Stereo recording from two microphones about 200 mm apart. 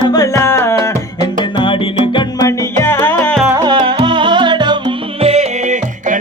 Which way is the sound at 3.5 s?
20° right (ahead or behind).